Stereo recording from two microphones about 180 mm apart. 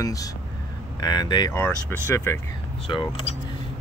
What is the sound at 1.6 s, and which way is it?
Speech, 10° left (ahead or behind).